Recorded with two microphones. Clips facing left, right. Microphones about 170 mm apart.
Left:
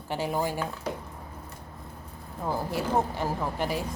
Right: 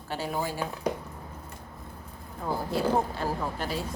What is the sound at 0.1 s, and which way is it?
Speech, 15° left (ahead or behind).